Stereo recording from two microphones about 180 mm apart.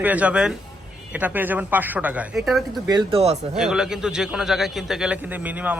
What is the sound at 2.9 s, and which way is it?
Speech, 25° right (ahead or behind).